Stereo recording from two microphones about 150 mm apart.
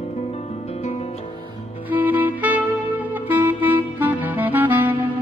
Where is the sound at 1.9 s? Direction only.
10° right (ahead or behind).